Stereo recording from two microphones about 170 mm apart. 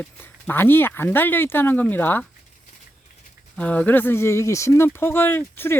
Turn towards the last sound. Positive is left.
turn(degrees=15)  # may be behind; listen again after turning